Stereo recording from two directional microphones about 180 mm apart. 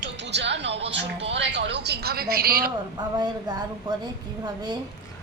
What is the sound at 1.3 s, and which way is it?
Speech, 85° right.